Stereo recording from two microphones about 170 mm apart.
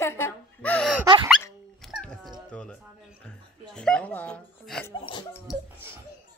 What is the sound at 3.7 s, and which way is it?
Speech, 5° left (ahead or behind).